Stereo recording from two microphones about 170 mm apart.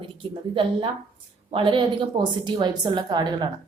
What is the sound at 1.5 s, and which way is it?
A woman's voice, 30° right (ahead or behind).